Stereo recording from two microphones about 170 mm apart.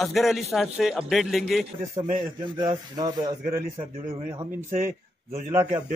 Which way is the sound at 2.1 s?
30° right (ahead or behind).